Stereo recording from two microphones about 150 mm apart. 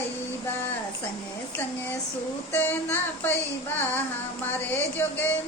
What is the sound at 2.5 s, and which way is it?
Child singing, 15° left (ahead or behind).